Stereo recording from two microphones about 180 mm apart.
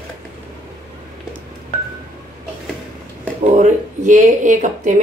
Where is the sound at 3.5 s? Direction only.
40° right (ahead or behind).